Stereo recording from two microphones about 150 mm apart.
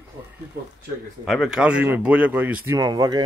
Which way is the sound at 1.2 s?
Centre (ahead or behind).